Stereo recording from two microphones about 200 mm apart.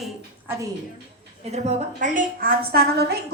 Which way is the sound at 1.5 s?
35° right (ahead or behind).